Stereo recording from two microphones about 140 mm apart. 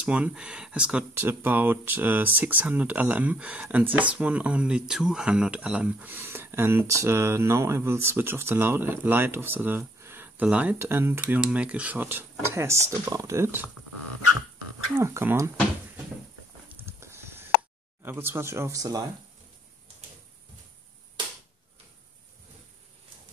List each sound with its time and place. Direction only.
0.0 s speech: 10° right (ahead or behind)
15.0 s speech: 20° right (ahead or behind)
16.6 s a sound: 20° right (ahead or behind)
18.0 s speech: 15° right (ahead or behind)